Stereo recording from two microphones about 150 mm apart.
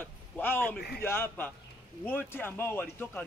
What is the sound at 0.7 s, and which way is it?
Speech, 90° left.